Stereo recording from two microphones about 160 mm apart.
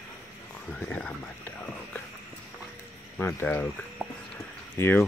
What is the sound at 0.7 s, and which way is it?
Speech, 10° left (ahead or behind).